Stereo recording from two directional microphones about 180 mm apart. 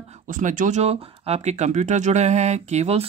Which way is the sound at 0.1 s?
45° right (ahead or behind).